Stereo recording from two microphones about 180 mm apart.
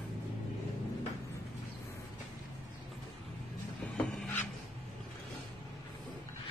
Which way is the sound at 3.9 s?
5° left (ahead or behind).